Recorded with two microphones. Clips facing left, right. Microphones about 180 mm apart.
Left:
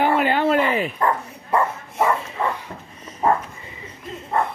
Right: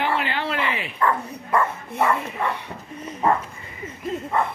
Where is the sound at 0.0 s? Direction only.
45° left (ahead or behind).